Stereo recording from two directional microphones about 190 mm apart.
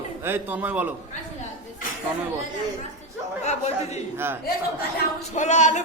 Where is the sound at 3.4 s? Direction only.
35° left (ahead or behind).